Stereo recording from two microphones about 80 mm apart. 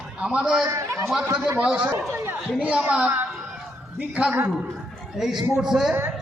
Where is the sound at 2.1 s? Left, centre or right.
Right.